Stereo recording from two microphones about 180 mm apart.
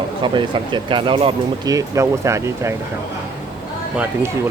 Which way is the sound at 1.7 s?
15° right (ahead or behind).